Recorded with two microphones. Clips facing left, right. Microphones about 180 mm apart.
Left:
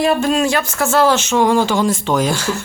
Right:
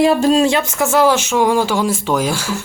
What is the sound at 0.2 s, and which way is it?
Speech, 35° right (ahead or behind).